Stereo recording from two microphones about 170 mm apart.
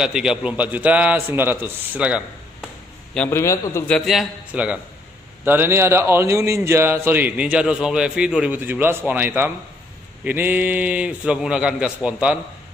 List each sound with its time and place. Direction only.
0.0 s a man's voice: 5° right (ahead or behind)
3.2 s a man's voice: 15° left (ahead or behind)
3.9 s a man's voice: centre (ahead or behind)